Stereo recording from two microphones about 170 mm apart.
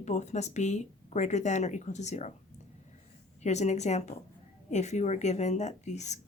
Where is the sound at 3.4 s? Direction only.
40° left (ahead or behind).